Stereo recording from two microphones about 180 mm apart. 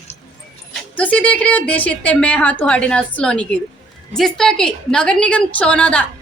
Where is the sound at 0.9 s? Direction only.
10° left (ahead or behind).